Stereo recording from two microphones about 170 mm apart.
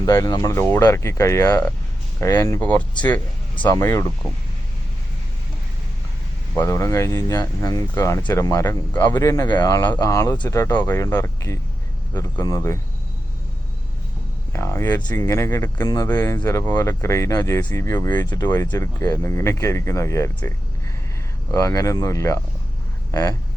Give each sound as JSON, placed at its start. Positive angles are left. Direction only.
{"t": 0.0, "sound": "speech", "side_deg": 25}
{"t": 2.6, "sound": "speech", "side_deg": 10}
{"t": 6.6, "sound": "speech", "side_deg": 15}
{"t": 14.5, "sound": "speech", "side_deg": 15}
{"t": 21.5, "sound": "speech", "side_deg": 20}